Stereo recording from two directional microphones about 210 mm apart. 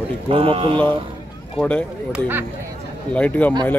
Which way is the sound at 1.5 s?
5° left (ahead or behind).